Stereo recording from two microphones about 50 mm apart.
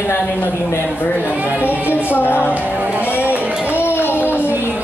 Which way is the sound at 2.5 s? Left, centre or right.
Right.